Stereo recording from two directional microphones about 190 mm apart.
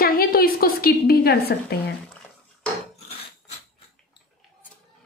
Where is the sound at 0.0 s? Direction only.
50° left (ahead or behind).